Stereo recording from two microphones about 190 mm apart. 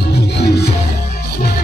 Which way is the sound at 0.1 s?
60° left (ahead or behind).